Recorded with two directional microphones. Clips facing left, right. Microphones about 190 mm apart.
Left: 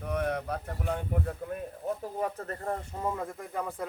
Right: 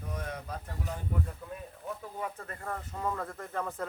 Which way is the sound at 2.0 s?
40° left (ahead or behind).